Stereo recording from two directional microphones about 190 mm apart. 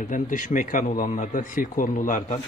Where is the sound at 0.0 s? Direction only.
45° left (ahead or behind).